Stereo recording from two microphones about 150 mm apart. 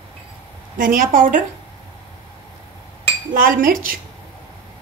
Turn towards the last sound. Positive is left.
turn(degrees=-70)  # may be behind; listen again after turning